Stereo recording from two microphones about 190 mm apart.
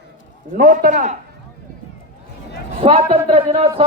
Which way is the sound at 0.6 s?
45° right (ahead or behind).